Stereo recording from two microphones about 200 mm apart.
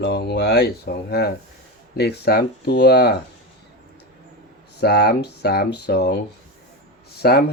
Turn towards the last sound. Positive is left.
turn(degrees=50)  # may be behind; listen again after turning